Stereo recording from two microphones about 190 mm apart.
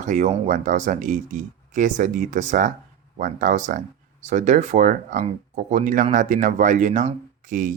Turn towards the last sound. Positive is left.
turn(degrees=-45)  # may be behind; listen again after turning